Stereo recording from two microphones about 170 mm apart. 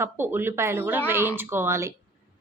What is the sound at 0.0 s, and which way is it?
A woman's voice, 15° right (ahead or behind).